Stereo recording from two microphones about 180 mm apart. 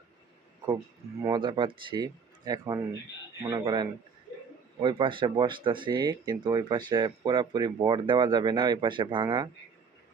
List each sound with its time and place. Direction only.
1.2 s speech: 25° right (ahead or behind)